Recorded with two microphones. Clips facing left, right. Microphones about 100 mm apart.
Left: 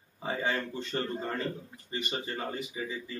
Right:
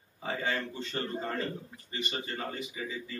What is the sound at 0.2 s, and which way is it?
Speech, 25° left (ahead or behind).